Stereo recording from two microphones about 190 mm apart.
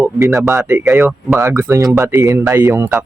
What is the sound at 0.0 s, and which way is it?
Speech, centre (ahead or behind).